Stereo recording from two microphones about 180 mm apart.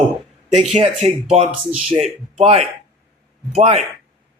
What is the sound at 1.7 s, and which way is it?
Speech, 5° right (ahead or behind).